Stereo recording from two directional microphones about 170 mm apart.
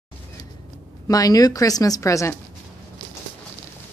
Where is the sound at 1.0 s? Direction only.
20° left (ahead or behind).